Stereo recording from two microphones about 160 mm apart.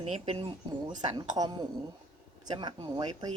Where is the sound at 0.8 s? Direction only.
25° right (ahead or behind).